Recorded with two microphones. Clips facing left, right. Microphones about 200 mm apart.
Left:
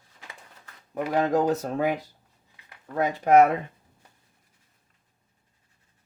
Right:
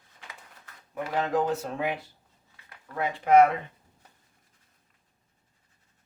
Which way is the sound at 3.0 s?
40° left (ahead or behind).